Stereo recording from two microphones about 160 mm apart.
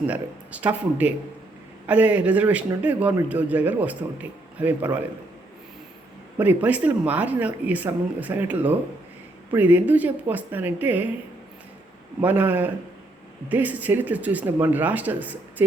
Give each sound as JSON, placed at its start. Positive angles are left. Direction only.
{"t": 0.1, "sound": "a man's voice", "side_deg": -10}
{"t": 6.4, "sound": "a man's voice", "side_deg": -10}
{"t": 12.2, "sound": "a man's voice", "side_deg": -10}